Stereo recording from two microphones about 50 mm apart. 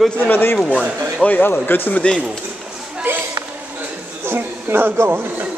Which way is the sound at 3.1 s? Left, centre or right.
Right.